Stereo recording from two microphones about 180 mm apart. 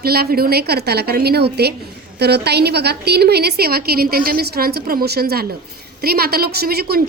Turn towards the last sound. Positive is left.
turn(degrees=-60)  # may be behind; listen again after turning